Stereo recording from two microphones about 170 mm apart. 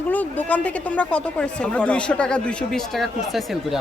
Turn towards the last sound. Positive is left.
turn(degrees=0)  # may be behind; listen again after turning